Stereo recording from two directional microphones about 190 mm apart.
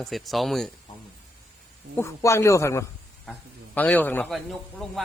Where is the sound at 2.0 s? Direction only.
15° left (ahead or behind).